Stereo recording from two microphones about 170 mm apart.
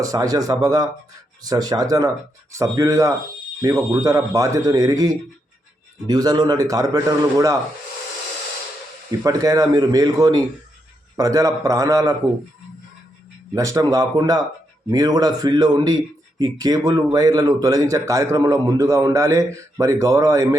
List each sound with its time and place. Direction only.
0.0 s speech: 20° right (ahead or behind)
9.2 s speech: 20° right (ahead or behind)
13.5 s speech: 20° right (ahead or behind)